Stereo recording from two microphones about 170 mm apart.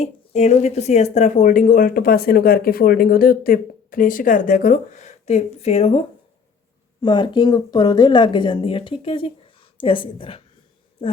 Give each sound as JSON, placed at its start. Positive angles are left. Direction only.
{"t": 0.0, "sound": "a woman's voice", "side_deg": 40}